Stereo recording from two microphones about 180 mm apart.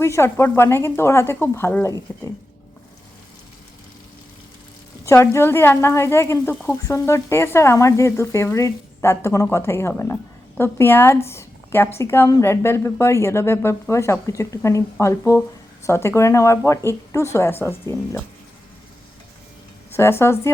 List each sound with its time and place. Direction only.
0.0 s a woman's voice: 15° left (ahead or behind)
5.0 s a woman's voice: 15° left (ahead or behind)
19.9 s a woman's voice: 15° left (ahead or behind)